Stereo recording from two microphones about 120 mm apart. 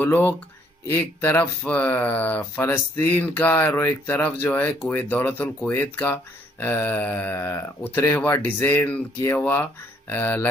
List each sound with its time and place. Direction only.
0.0 s speech: 15° left (ahead or behind)